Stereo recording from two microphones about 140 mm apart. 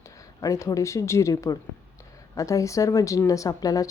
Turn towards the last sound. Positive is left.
turn(degrees=25)  # may be behind; listen again after turning